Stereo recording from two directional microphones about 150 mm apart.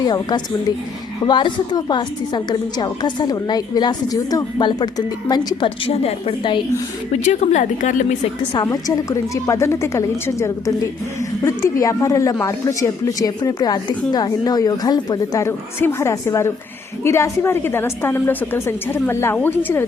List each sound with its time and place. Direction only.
0.0 s a woman's voice: 25° left (ahead or behind)
5.6 s a woman's voice: 40° left (ahead or behind)
7.1 s a woman's voice: 50° left (ahead or behind)
8.5 s a woman's voice: 25° left (ahead or behind)